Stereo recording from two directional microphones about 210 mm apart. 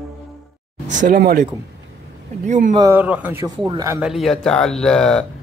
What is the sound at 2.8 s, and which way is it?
A man's voice, 10° right (ahead or behind).